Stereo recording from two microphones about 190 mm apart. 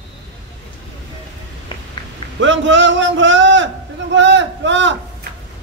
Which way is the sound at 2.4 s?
80° right.